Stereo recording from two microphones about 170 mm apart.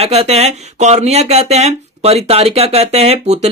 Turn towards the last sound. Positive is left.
turn(degrees=-40)  # may be behind; listen again after turning